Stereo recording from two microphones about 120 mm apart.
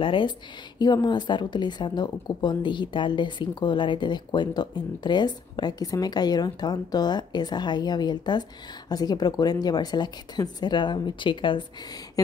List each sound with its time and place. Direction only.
0.0 s a woman's voice: 45° left (ahead or behind)